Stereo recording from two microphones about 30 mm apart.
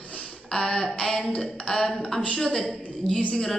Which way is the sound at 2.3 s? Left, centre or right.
Centre.